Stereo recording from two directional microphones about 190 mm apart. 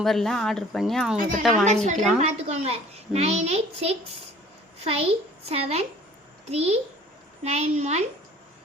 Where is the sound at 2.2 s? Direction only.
35° right (ahead or behind).